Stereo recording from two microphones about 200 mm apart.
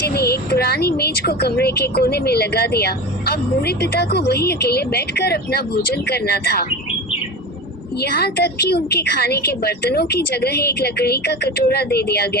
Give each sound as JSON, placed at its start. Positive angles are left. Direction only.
{"t": 0.1, "sound": "a woman's voice", "side_deg": 50}
{"t": 8.0, "sound": "a woman's voice", "side_deg": 50}